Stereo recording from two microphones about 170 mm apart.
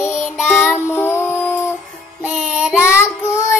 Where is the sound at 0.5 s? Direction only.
10° left (ahead or behind).